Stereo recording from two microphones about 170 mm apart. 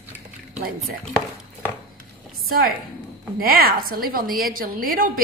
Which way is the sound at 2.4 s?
65° right (ahead or behind).